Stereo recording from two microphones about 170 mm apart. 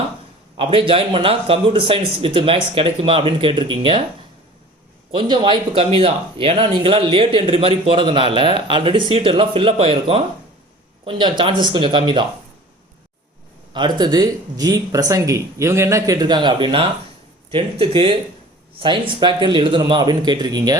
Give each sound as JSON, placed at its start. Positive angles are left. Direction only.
{"t": 0.5, "sound": "speech", "side_deg": -30}
{"t": 5.1, "sound": "speech", "side_deg": -30}
{"t": 13.7, "sound": "speech", "side_deg": -25}